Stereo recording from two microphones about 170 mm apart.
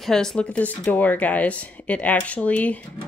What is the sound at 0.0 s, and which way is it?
Speech, 5° left (ahead or behind).